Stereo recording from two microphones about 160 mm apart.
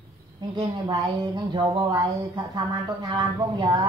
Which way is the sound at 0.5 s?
25° right (ahead or behind).